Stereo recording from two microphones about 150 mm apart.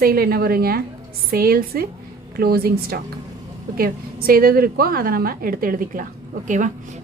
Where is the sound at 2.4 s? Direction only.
90° right; by 6.0 s 70° right (ahead or behind).